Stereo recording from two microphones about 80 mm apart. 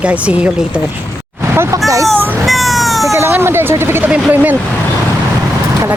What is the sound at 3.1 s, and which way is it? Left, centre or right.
Speech, right.